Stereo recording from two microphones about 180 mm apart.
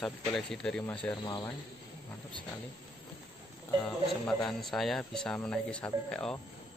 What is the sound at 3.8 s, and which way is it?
Speech, 5° left (ahead or behind).